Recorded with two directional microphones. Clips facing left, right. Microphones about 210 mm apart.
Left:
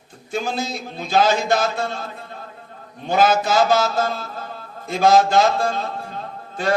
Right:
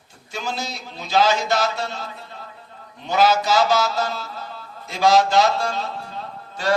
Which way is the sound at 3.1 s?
50° left (ahead or behind).